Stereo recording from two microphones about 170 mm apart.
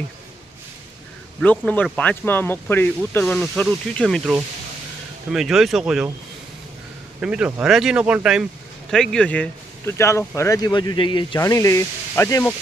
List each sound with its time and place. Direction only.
1.4 s speech: 10° left (ahead or behind)
7.2 s speech: 5° right (ahead or behind); by 11.4 s 30° left (ahead or behind)
11.4 s speech: 20° left (ahead or behind)